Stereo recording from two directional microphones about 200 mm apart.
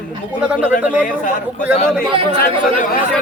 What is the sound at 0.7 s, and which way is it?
Speech, 40° left (ahead or behind).